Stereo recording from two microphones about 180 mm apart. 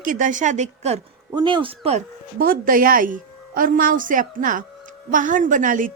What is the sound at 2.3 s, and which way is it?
A woman's voice, 50° right (ahead or behind).